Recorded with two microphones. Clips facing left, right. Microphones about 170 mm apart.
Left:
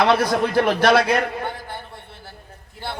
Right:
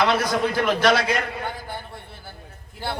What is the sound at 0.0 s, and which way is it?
A man's voice, 60° left (ahead or behind).